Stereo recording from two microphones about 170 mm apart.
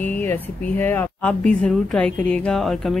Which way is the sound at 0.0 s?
10° left (ahead or behind).